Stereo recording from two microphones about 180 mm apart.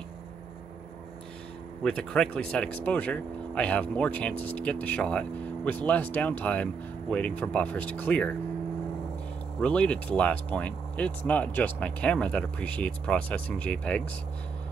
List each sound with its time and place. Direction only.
1.8 s speech: 5° left (ahead or behind)
9.6 s speech: 5° left (ahead or behind)